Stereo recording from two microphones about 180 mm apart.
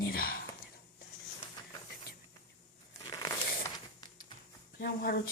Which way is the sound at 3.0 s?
25° left (ahead or behind).